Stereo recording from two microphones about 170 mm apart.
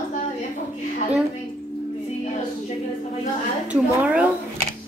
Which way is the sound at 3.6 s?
10° right (ahead or behind).